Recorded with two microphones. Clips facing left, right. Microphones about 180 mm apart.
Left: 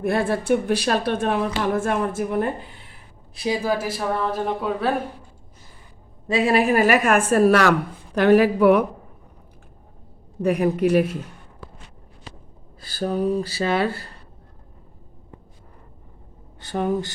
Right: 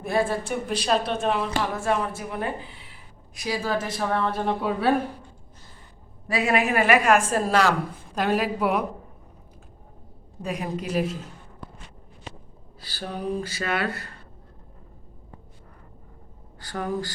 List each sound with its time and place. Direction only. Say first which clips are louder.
0.0 s a woman's voice: left 3 dB; 60° left (ahead or behind)
3.3 s speech: left 5 dB; 25° left (ahead or behind)
3.6 s speech: left 3 dB; 10° left (ahead or behind)
6.2 s a woman's voice: left 4 dB; 30° left (ahead or behind); by 8.8 s 60° left (ahead or behind)
10.4 s a man's voice: left 11 dB; 60° left (ahead or behind)
12.8 s speech: left 8 dB; 45° left (ahead or behind); by 14.1 s 30° left (ahead or behind)
16.6 s speech: left 5 dB; 25° left (ahead or behind)